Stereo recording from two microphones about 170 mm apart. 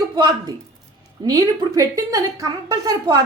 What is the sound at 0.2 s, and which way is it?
A woman's voice, 25° right (ahead or behind).